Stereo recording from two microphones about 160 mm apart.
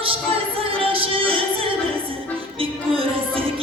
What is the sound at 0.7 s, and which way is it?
Music, 35° right (ahead or behind).